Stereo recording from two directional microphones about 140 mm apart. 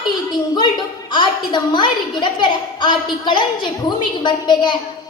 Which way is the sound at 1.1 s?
35° left (ahead or behind).